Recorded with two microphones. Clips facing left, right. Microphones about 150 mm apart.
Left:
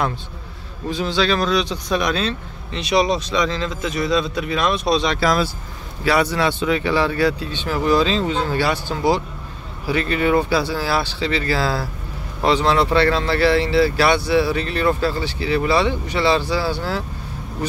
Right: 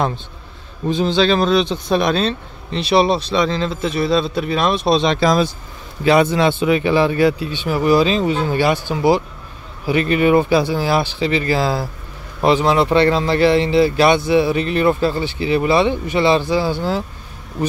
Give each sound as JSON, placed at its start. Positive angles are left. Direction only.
{"t": 0.8, "sound": "speech", "side_deg": -25}